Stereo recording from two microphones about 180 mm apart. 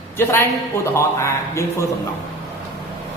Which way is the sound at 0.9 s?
15° left (ahead or behind).